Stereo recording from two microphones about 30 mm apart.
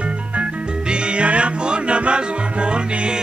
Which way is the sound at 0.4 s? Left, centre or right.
Right.